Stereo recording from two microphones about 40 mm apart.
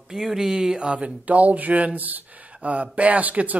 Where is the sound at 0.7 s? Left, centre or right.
Right.